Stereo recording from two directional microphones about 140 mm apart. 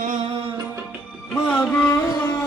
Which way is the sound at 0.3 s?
40° right (ahead or behind).